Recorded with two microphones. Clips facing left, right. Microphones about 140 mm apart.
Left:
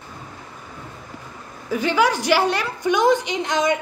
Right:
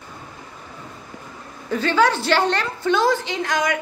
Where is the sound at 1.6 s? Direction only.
15° left (ahead or behind).